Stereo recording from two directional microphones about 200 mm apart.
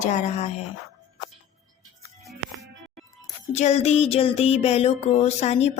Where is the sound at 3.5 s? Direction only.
35° left (ahead or behind).